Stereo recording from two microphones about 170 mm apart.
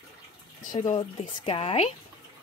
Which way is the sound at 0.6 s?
50° left (ahead or behind).